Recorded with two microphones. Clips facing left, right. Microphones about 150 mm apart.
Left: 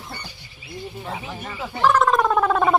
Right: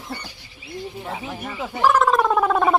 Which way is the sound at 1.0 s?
10° right (ahead or behind).